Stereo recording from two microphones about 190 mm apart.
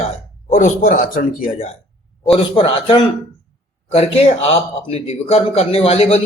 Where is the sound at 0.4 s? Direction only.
40° left (ahead or behind).